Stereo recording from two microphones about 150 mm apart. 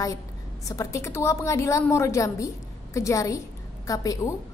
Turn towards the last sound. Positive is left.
turn(degrees=20)  # may be behind; listen again after turning